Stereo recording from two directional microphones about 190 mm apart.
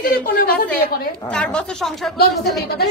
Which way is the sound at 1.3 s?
5° left (ahead or behind).